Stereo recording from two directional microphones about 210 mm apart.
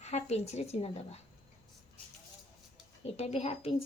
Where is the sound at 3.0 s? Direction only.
30° left (ahead or behind).